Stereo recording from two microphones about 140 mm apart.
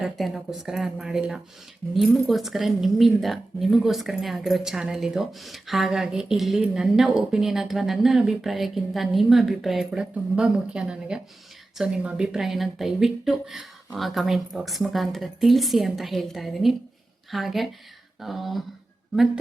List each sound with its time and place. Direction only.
0.0 s speech: centre (ahead or behind)